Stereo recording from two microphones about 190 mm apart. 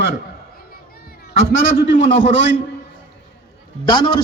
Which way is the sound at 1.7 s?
40° left (ahead or behind).